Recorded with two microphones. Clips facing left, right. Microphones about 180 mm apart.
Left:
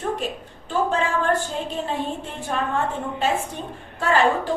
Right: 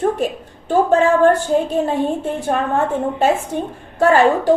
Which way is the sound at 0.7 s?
45° right (ahead or behind).